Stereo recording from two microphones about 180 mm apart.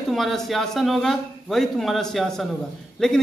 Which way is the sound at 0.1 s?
Centre (ahead or behind).